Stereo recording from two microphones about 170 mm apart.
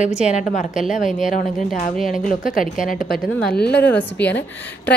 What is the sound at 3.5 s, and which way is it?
Speech, 70° left (ahead or behind).